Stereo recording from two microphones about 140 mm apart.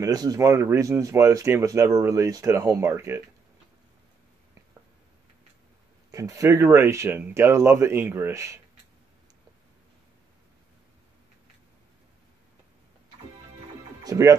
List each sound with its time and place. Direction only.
0.0 s speech: 25° right (ahead or behind)
6.1 s speech: 25° right (ahead or behind)
14.0 s speech: 25° right (ahead or behind)